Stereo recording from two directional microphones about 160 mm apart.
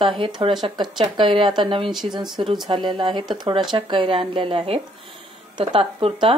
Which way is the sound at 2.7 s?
30° right (ahead or behind).